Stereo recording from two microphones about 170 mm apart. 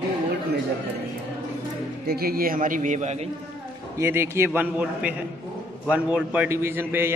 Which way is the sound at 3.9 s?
15° right (ahead or behind).